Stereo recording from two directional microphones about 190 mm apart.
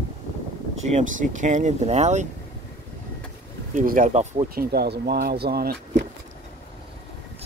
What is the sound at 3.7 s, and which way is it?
Speech, 45° right (ahead or behind).